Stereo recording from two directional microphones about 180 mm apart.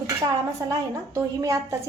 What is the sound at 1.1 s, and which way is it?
Speech, 15° right (ahead or behind).